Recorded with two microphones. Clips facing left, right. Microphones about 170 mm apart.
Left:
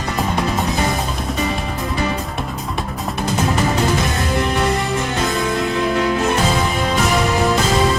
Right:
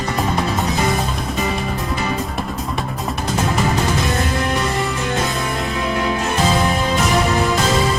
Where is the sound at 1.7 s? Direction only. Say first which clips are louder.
Even; centre (ahead or behind).